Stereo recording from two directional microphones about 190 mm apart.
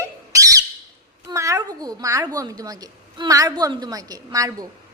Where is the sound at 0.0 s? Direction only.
15° right (ahead or behind).